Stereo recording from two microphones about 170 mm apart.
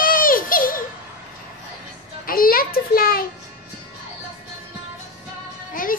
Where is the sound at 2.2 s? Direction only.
55° left (ahead or behind).